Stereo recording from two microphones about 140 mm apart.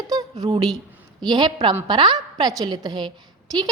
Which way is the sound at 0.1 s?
25° right (ahead or behind).